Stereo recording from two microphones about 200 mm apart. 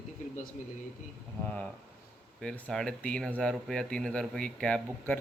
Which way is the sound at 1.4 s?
5° left (ahead or behind).